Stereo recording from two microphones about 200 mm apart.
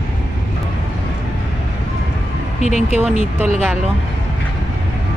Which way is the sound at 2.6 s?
35° left (ahead or behind).